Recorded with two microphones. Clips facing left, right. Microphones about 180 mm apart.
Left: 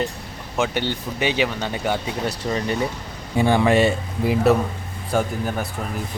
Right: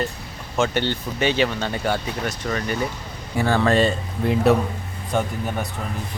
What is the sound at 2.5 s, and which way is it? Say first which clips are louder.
A man's voice: left 2 dB; 25° left (ahead or behind).